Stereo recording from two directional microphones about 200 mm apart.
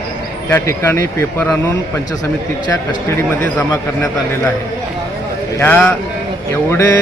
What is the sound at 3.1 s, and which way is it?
Speech, 5° left (ahead or behind).